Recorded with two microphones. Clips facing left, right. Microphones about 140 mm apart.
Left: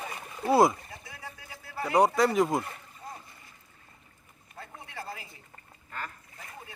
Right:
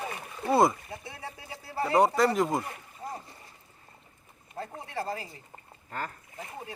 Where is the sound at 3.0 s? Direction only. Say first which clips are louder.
Right 5 dB; 35° right (ahead or behind).